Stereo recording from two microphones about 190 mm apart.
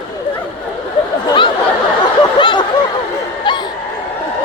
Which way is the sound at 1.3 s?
25° left (ahead or behind).